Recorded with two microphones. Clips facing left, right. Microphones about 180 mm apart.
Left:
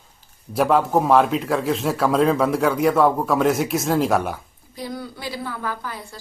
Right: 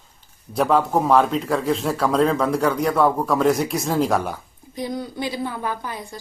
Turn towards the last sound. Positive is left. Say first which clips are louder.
# right 2 dB
turn(degrees=-20)  # may be behind; listen again after turning